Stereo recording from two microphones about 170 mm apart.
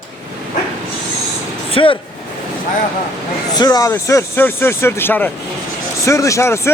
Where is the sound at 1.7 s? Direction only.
30° left (ahead or behind).